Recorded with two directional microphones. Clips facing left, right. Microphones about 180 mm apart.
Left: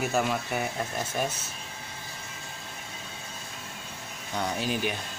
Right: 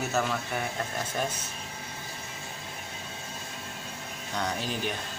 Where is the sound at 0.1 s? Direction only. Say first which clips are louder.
Left 2 dB; 10° left (ahead or behind).